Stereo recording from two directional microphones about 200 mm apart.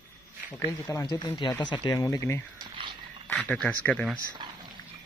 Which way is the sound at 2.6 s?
25° right (ahead or behind).